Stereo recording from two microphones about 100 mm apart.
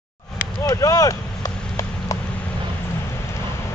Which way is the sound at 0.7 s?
35° left (ahead or behind).